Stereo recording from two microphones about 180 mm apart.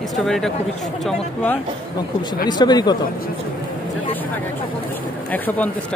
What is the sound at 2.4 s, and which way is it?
Speech, 25° left (ahead or behind).